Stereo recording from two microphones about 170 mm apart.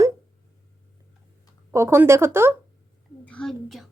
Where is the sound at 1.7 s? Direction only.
15° right (ahead or behind).